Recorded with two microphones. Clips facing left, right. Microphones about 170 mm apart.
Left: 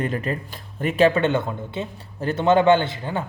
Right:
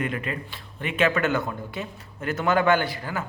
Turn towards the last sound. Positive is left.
turn(degrees=25)  # may be behind; listen again after turning